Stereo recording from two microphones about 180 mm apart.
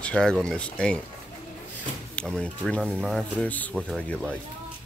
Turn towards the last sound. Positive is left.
turn(degrees=5)  # may be behind; listen again after turning